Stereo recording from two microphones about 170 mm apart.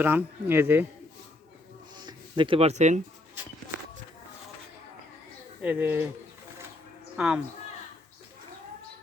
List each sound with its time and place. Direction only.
0.0 s speech: 10° right (ahead or behind)
2.0 s speech: 25° right (ahead or behind); by 3.0 s 45° right (ahead or behind)
5.6 s speech: 10° right (ahead or behind)
7.2 s speech: 5° right (ahead or behind)